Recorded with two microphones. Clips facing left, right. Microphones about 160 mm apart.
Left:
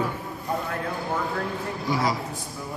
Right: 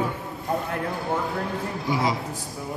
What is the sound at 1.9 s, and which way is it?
Speech, 20° right (ahead or behind).